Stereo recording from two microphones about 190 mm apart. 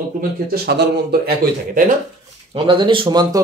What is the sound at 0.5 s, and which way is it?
Speech, 55° right (ahead or behind).